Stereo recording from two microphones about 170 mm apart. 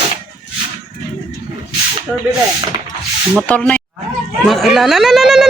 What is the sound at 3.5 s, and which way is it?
Speech, 10° left (ahead or behind).